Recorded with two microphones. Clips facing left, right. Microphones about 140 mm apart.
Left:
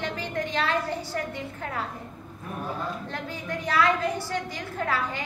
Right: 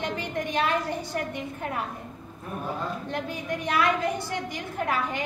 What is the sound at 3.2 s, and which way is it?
A woman's voice, 15° right (ahead or behind).